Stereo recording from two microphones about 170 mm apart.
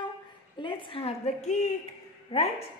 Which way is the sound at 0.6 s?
30° left (ahead or behind).